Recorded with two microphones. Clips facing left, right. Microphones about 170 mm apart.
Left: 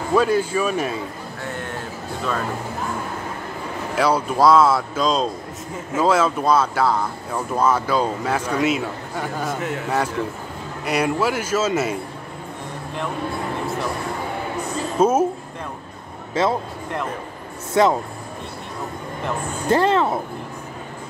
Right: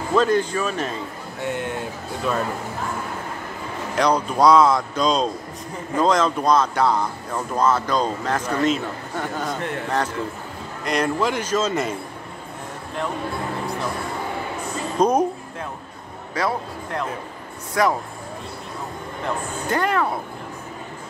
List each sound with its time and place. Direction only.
0.1 s speech: 10° left (ahead or behind)
3.9 s speech: 5° left (ahead or behind)
15.0 s speech: 5° left (ahead or behind)
16.4 s speech: 25° left (ahead or behind)
17.8 s speech: 25° left (ahead or behind)
19.7 s speech: 25° left (ahead or behind)